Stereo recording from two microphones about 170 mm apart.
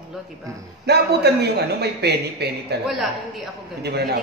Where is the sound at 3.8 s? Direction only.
75° right (ahead or behind).